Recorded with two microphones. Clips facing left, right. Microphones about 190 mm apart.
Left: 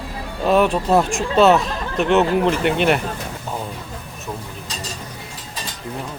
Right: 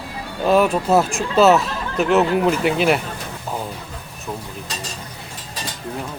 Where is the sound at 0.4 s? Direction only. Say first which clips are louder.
Even; centre (ahead or behind).